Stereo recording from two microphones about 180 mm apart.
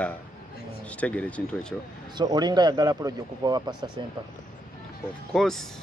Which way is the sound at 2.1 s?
20° right (ahead or behind).